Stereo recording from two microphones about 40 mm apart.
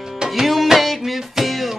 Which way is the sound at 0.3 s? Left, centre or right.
Centre.